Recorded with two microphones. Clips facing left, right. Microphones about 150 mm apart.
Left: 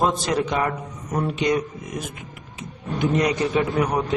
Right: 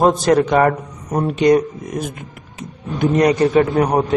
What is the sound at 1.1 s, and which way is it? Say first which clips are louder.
A man's voice: right 8 dB; 40° right (ahead or behind).